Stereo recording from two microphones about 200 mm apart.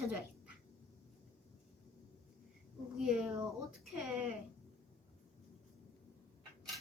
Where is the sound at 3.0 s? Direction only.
Centre (ahead or behind).